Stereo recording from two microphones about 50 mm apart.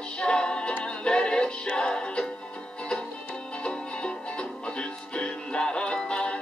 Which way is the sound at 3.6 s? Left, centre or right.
Centre.